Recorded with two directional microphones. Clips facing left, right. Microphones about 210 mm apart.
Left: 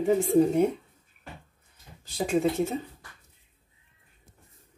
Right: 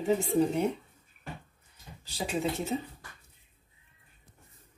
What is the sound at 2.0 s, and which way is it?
Speech, 50° left (ahead or behind).